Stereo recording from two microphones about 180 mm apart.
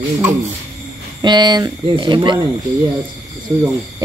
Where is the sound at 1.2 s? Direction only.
25° right (ahead or behind).